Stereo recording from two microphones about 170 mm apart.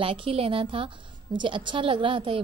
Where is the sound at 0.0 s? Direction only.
30° right (ahead or behind).